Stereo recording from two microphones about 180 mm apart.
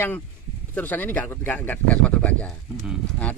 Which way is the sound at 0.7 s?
10° left (ahead or behind).